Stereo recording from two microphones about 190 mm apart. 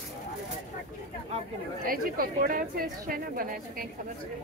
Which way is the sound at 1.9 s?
50° right (ahead or behind).